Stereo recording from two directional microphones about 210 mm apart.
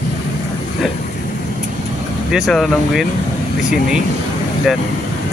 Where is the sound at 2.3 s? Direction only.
Centre (ahead or behind).